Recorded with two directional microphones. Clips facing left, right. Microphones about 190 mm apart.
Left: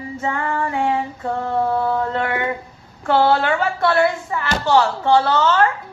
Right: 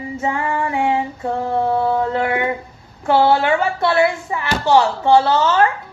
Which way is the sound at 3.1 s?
15° right (ahead or behind).